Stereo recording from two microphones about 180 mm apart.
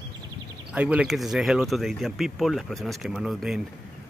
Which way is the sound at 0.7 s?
5° right (ahead or behind).